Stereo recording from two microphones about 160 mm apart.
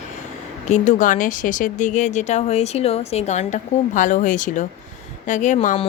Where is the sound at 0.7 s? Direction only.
50° left (ahead or behind).